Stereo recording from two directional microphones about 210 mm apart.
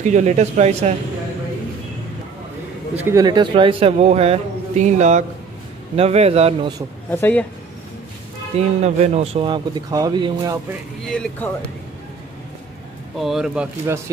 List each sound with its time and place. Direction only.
0.0 s speech: 35° right (ahead or behind)
3.1 s speech: 20° right (ahead or behind)
7.1 s speech: 10° left (ahead or behind)
8.5 s speech: 30° right (ahead or behind)
11.1 s speech: 5° left (ahead or behind)
13.2 s speech: centre (ahead or behind)
13.8 s speech: 15° right (ahead or behind)